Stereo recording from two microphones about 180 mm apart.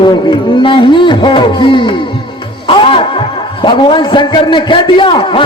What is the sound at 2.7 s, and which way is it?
Music, 30° left (ahead or behind).